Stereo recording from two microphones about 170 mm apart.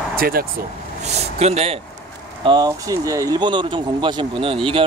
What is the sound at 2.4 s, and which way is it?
Speech, 25° right (ahead or behind).